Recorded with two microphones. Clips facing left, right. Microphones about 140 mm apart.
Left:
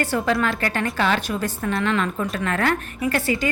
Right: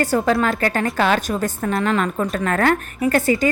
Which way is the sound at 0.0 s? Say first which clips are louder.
Right 4 dB; 40° right (ahead or behind).